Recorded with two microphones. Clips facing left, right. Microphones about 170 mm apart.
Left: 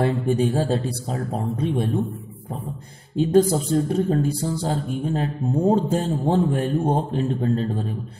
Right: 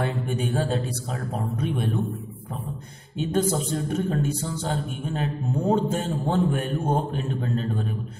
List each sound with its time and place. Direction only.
0.0 s a man's voice: 35° left (ahead or behind)
3.2 s a man's voice: 35° left (ahead or behind)